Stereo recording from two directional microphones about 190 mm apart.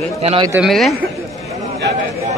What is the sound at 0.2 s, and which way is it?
Speech, 30° right (ahead or behind).